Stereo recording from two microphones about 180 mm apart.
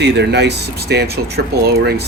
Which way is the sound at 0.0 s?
70° right (ahead or behind).